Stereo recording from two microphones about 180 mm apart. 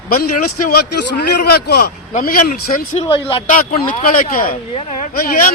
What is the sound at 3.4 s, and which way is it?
A man's voice, 45° left (ahead or behind).